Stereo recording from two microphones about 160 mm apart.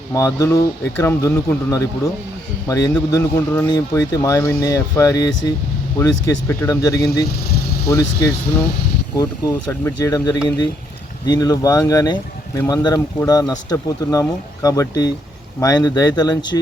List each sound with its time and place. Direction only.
0.1 s speech: 20° left (ahead or behind)